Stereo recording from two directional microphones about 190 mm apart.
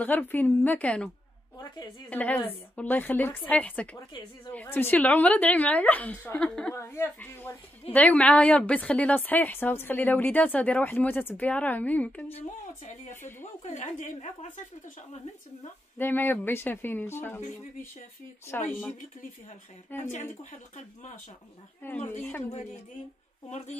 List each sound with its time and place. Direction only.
0.0 s a woman's voice: 10° left (ahead or behind)
12.8 s a woman's voice: 40° left (ahead or behind)
16.0 s a woman's voice: 10° left (ahead or behind)
18.5 s a woman's voice: 10° left (ahead or behind)
20.0 s a woman's voice: 40° left (ahead or behind)
21.8 s a woman's voice: 10° left (ahead or behind)
22.4 s a woman's voice: 35° left (ahead or behind)